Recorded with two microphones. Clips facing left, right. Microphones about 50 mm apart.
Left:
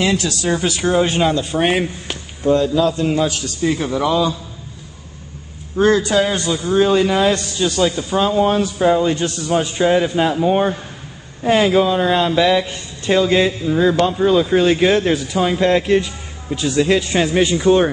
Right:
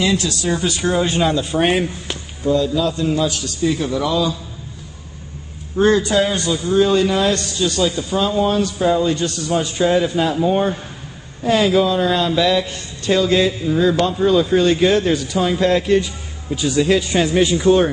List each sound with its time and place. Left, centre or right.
0.0 s speech: left; by 1.3 s centre
1.3 s speech: centre
2.4 s a man's voice: left
5.8 s a man's voice: left
6.9 s speech: centre
7.6 s a man's voice: left; by 17.9 s centre